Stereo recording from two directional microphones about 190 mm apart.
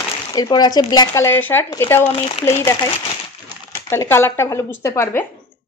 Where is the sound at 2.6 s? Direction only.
15° left (ahead or behind).